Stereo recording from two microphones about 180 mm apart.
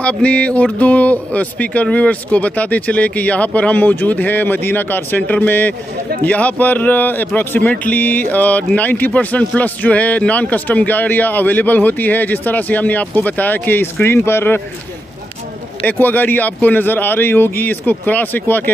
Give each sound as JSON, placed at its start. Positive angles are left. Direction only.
{"t": 0.0, "sound": "speech", "side_deg": 5}
{"t": 15.8, "sound": "speech", "side_deg": 10}